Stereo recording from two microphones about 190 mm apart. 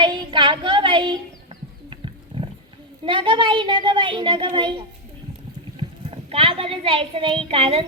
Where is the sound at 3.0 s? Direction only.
25° right (ahead or behind).